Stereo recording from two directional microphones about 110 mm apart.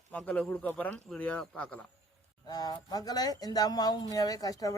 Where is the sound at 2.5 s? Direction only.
35° left (ahead or behind).